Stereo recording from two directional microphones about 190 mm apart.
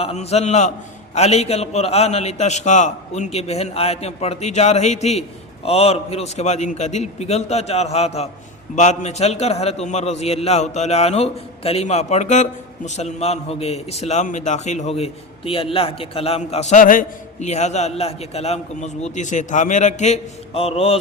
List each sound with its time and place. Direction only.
0.0 s a man's voice: 35° left (ahead or behind)